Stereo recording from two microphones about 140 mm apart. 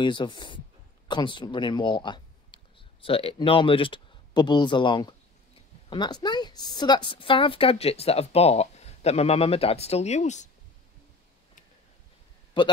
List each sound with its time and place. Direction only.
0.0 s a woman's voice: 35° left (ahead or behind); by 10.5 s 55° left (ahead or behind)